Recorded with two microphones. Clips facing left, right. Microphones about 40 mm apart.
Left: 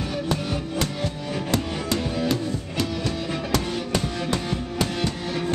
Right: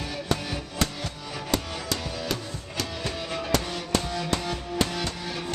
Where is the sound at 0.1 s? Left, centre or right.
Centre.